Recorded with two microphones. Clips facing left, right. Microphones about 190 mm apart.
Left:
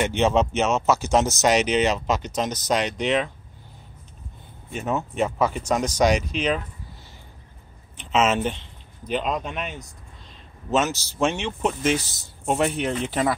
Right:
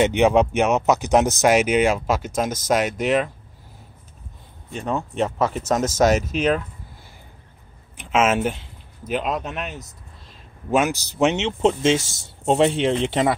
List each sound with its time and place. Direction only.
0.0 s speech: 15° right (ahead or behind)
4.7 s speech: 5° left (ahead or behind)
5.9 s speech: 45° right (ahead or behind)
8.0 s speech: 10° right (ahead or behind); by 13.4 s 25° right (ahead or behind)